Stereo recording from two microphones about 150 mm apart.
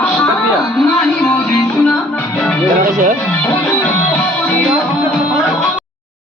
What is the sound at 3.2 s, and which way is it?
Music, 10° left (ahead or behind).